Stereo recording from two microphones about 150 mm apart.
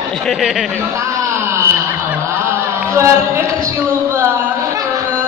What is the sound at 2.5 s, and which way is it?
Music, 15° right (ahead or behind).